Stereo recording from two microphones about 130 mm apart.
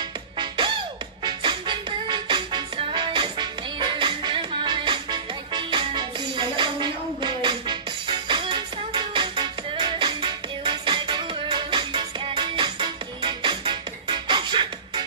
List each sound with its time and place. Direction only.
0.4 s music: 40° right (ahead or behind)